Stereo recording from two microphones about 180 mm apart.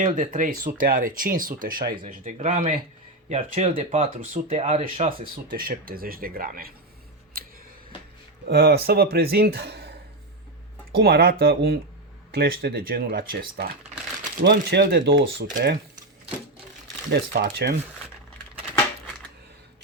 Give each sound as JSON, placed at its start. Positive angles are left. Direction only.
{"t": 0.0, "sound": "speech", "side_deg": -45}
{"t": 5.5, "sound": "speech", "side_deg": -55}
{"t": 7.3, "sound": "a sound", "side_deg": -55}
{"t": 8.4, "sound": "speech", "side_deg": -65}
{"t": 14.4, "sound": "speech", "side_deg": -70}
{"t": 17.1, "sound": "speech", "side_deg": -65}